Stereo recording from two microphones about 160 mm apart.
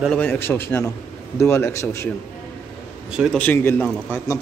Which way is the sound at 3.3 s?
10° left (ahead or behind).